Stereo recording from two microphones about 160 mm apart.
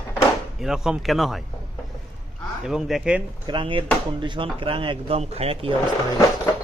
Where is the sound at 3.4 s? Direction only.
30° right (ahead or behind).